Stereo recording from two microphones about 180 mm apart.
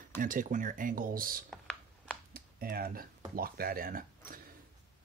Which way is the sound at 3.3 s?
55° right (ahead or behind).